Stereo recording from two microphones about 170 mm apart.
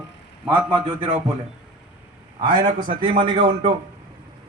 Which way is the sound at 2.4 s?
25° right (ahead or behind).